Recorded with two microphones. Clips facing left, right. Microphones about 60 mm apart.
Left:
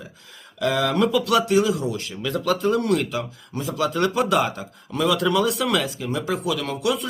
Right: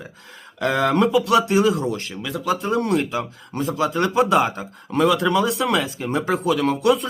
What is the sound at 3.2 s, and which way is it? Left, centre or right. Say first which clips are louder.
Speech: right 4 dB; right.